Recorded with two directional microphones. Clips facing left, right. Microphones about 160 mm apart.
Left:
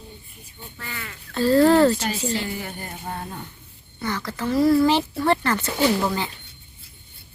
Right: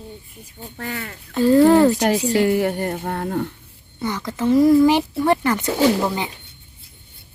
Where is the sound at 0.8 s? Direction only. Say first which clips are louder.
Right 8 dB; 45° right (ahead or behind).